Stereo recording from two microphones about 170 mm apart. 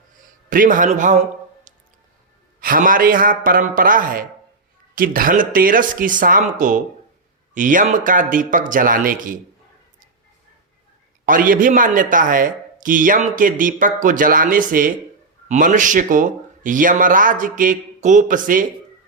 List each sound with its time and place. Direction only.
0.5 s a man's voice: 50° right (ahead or behind)
1.7 s squish: 50° right (ahead or behind)
2.6 s a man's voice: 55° right (ahead or behind)
11.3 s a man's voice: 55° right (ahead or behind)